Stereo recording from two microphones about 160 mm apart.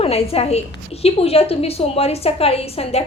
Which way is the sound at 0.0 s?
40° left (ahead or behind).